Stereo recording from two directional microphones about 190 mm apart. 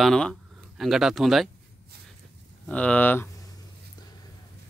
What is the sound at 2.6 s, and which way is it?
Speech, 5° left (ahead or behind).